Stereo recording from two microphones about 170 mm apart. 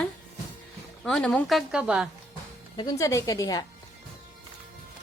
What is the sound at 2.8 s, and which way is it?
Speech, 20° left (ahead or behind).